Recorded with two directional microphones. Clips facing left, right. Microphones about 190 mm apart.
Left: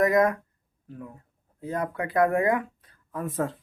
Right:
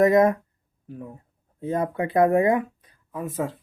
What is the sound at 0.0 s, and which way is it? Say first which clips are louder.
Speech: right 4 dB; 25° right (ahead or behind).